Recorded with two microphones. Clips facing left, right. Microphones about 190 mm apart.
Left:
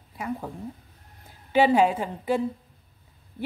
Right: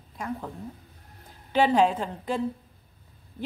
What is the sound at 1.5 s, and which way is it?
Speech, 10° left (ahead or behind).